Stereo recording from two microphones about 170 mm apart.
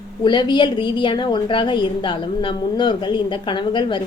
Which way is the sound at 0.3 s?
25° left (ahead or behind).